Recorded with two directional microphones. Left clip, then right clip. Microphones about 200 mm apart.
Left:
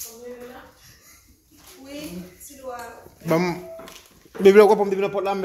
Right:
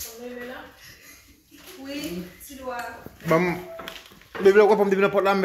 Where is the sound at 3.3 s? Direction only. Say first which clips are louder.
Right 1 dB; 20° left (ahead or behind).